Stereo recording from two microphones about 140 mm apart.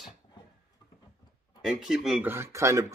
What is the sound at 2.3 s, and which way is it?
Speech, 20° right (ahead or behind).